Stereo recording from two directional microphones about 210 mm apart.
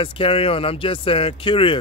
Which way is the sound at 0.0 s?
25° left (ahead or behind).